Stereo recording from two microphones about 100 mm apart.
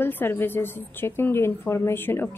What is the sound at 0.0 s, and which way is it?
A woman's voice, 20° left (ahead or behind).